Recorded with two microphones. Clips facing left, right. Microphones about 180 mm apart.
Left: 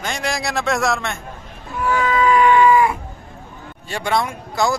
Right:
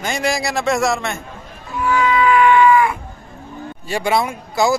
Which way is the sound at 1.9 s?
45° left (ahead or behind).